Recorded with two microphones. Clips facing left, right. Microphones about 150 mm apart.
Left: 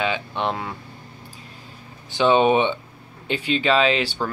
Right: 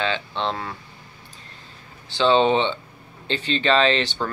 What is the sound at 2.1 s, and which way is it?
Speech, 15° left (ahead or behind).